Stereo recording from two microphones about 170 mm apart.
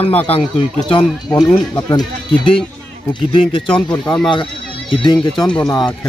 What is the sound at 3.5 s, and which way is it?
Speech, 30° left (ahead or behind).